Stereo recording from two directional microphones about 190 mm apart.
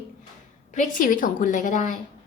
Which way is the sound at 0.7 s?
45° left (ahead or behind).